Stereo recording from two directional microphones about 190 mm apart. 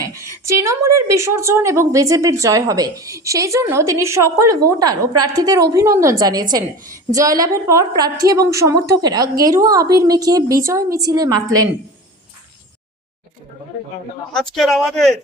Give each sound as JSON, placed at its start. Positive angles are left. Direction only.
{"t": 0.0, "sound": "a woman's voice", "side_deg": -15}
{"t": 14.3, "sound": "speech", "side_deg": 0}